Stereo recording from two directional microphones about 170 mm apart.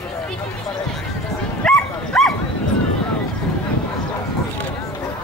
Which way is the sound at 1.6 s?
5° left (ahead or behind).